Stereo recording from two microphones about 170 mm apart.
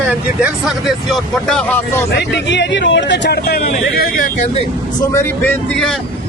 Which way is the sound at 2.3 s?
90° left.